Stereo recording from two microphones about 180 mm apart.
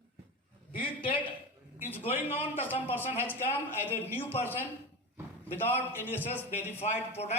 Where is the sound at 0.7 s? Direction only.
30° left (ahead or behind).